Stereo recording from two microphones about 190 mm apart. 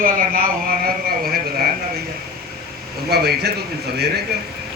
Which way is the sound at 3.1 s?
55° right (ahead or behind).